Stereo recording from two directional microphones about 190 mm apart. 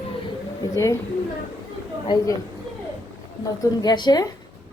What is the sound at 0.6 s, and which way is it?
Speech, 15° left (ahead or behind).